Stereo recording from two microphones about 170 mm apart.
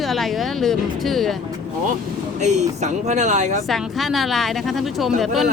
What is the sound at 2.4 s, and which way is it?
Speech, 45° right (ahead or behind).